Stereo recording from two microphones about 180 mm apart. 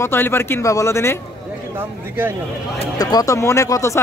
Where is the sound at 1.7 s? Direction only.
10° right (ahead or behind).